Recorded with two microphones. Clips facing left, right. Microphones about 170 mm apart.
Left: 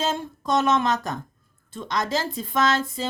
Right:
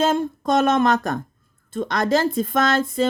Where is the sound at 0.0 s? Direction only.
55° right (ahead or behind).